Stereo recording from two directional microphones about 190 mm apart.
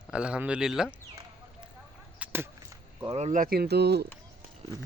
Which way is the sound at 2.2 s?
10° right (ahead or behind).